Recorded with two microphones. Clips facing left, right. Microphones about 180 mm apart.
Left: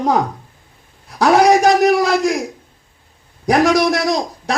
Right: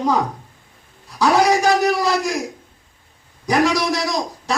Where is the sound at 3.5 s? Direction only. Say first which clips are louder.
Left 4 dB; 60° left (ahead or behind).